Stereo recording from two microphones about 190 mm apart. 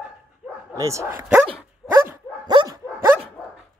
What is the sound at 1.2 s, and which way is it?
Dog, 5° right (ahead or behind).